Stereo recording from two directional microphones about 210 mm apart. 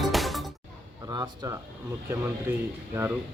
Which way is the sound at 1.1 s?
20° right (ahead or behind).